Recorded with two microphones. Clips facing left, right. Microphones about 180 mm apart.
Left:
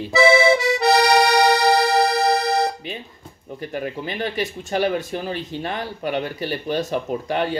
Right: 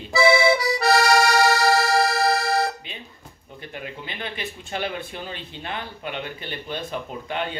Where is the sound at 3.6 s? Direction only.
40° left (ahead or behind).